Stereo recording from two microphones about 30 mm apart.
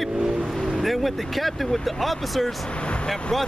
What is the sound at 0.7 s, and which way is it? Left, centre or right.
Speech, centre.